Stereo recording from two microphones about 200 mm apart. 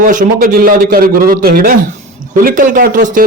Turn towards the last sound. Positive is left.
turn(degrees=-40)  # may be behind; listen again after turning